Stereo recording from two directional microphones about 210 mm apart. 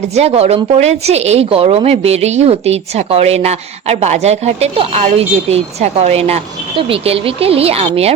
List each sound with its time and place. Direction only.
0.1 s a woman's voice: 30° right (ahead or behind)